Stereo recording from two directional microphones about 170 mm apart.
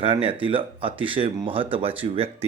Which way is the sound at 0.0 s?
35° right (ahead or behind).